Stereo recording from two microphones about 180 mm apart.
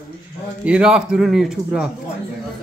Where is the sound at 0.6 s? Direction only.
5° right (ahead or behind).